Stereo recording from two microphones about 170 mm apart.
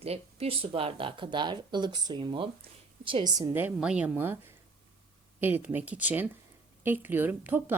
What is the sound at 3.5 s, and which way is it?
Speech, 10° right (ahead or behind).